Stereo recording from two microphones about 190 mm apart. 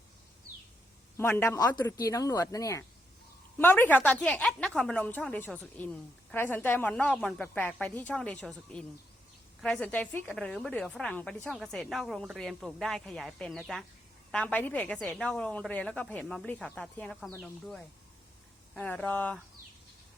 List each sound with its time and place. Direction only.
1.1 s a woman's voice: 15° left (ahead or behind)